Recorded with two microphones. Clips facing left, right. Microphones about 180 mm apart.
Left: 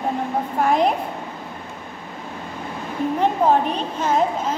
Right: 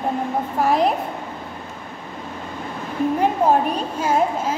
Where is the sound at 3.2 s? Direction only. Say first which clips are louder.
Left 1 dB; 10° right (ahead or behind).